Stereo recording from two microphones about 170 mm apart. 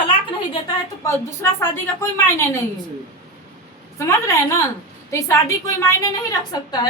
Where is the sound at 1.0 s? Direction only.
15° left (ahead or behind).